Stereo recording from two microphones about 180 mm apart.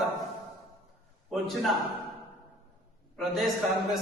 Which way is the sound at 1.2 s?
Centre (ahead or behind).